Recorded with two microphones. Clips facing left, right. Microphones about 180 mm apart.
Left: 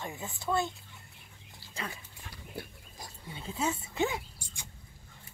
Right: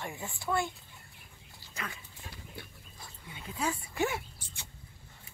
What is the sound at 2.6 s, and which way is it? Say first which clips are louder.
Dog: left 5 dB; 40° left (ahead or behind).